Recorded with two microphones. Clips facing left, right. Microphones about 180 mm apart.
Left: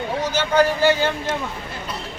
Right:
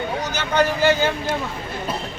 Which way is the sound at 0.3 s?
30° left (ahead or behind).